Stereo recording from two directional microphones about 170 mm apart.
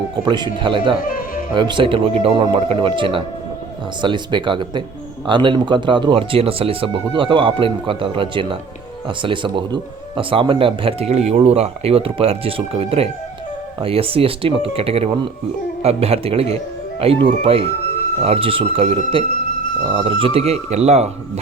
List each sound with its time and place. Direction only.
0.3 s speech: 25° right (ahead or behind)